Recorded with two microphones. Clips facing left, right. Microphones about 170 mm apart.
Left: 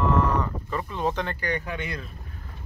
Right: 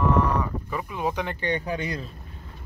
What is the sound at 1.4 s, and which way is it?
Speech, 30° right (ahead or behind).